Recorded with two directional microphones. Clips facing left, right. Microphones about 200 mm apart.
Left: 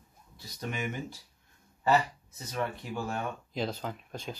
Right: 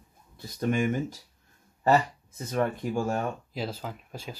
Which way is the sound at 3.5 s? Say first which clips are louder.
Even; 5° right (ahead or behind).